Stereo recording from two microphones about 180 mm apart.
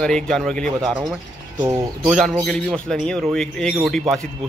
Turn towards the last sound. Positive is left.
turn(degrees=0)  # may be behind; listen again after turning